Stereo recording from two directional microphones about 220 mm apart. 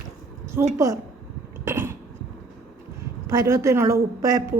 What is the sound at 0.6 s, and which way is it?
Speech, 10° right (ahead or behind).